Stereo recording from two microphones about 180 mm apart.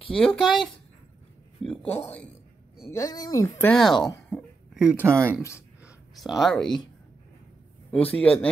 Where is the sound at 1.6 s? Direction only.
5° left (ahead or behind).